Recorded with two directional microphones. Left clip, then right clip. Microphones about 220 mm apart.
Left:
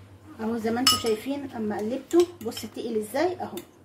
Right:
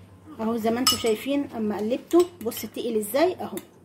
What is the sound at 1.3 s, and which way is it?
Speech, 45° right (ahead or behind).